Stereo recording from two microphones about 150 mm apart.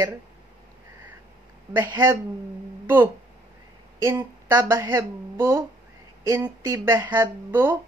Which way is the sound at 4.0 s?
20° right (ahead or behind).